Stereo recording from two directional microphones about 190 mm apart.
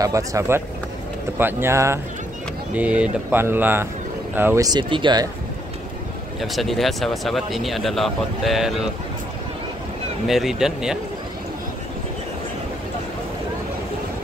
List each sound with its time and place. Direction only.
0.0 s speech: 15° right (ahead or behind)
6.4 s speech: centre (ahead or behind)
10.2 s speech: centre (ahead or behind)